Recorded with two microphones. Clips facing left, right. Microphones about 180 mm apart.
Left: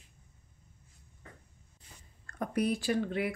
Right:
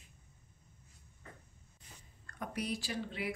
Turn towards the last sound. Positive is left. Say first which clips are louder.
# left 8 dB
turn(degrees=55)  # may be behind; listen again after turning